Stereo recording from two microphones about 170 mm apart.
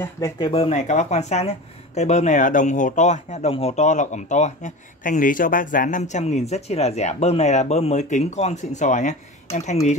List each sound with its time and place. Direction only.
0.0 s speech: 15° left (ahead or behind)
0.5 s speech: 35° left (ahead or behind)